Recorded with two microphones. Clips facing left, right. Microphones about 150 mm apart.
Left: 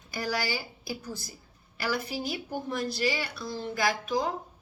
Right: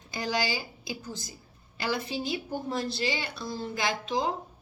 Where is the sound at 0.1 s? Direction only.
20° right (ahead or behind).